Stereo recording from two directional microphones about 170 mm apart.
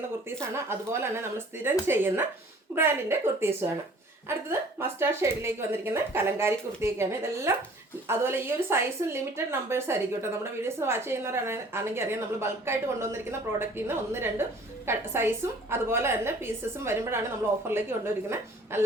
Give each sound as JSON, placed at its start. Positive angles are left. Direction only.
{"t": 0.5, "sound": "a woman's voice", "side_deg": -15}